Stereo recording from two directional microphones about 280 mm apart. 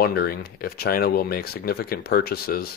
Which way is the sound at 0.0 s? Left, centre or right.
Left.